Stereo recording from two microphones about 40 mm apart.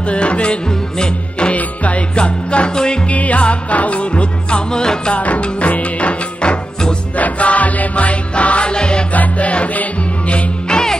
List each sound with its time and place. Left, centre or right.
0.1 s music: left
1.5 s music: left
3.1 s music: left
5.1 s music: left
9.1 s music: left
10.7 s music: centre